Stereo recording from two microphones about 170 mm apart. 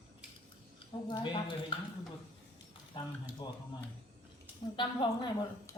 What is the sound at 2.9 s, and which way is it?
Speech, 25° left (ahead or behind).